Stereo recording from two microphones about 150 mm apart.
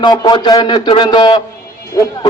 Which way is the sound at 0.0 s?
30° left (ahead or behind).